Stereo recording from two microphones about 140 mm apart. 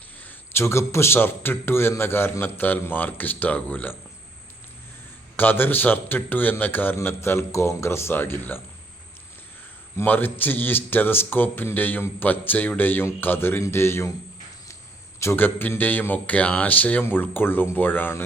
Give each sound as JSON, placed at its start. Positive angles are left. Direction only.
{"t": 0.3, "sound": "speech", "side_deg": 15}
{"t": 5.4, "sound": "speech", "side_deg": 15}
{"t": 10.0, "sound": "speech", "side_deg": 15}
{"t": 15.2, "sound": "speech", "side_deg": 15}